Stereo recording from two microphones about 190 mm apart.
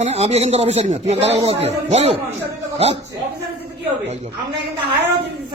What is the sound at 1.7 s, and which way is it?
Speech, 35° right (ahead or behind).